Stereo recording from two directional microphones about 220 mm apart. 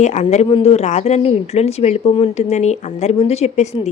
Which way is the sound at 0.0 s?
30° left (ahead or behind).